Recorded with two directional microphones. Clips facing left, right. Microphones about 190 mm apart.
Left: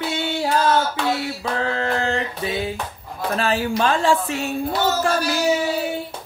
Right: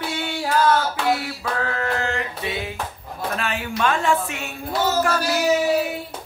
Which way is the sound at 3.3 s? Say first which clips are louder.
Left 7 dB; 35° left (ahead or behind).